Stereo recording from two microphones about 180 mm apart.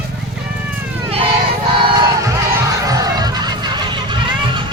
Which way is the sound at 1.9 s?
15° right (ahead or behind).